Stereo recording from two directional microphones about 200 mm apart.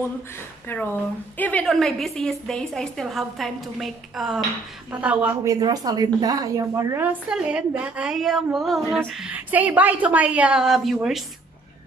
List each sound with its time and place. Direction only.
0.7 s a woman's voice: 10° left (ahead or behind)